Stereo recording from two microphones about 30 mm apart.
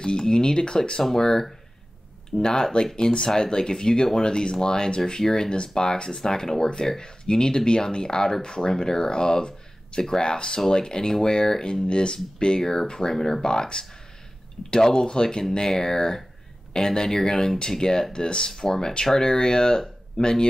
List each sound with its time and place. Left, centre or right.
0.0 s speech: left
1.1 s speech: centre